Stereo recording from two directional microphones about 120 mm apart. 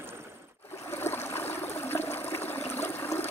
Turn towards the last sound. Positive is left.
turn(degrees=20)  # may be behind; listen again after turning